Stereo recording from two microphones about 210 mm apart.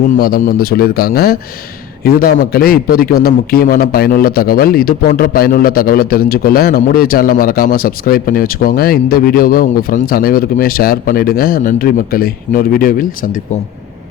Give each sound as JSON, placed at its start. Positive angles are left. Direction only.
{"t": 0.2, "sound": "a man's voice", "side_deg": 45}